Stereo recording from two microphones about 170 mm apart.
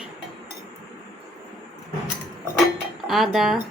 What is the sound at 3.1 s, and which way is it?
Speech, centre (ahead or behind).